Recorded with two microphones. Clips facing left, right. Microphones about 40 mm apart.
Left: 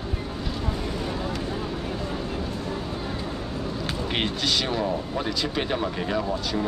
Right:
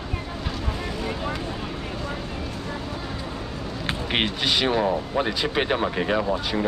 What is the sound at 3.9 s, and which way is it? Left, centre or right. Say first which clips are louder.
Speech: right 4 dB; right.